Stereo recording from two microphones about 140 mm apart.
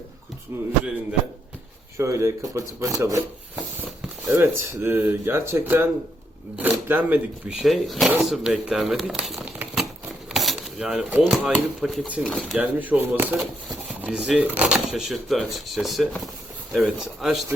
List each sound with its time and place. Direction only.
2.0 s speech: 20° right (ahead or behind)
4.3 s speech: 20° right (ahead or behind)
7.6 s speech: centre (ahead or behind)
10.3 s a sound: centre (ahead or behind)
11.2 s speech: centre (ahead or behind)
12.3 s speech: 5° left (ahead or behind)
12.5 s speech: 10° right (ahead or behind)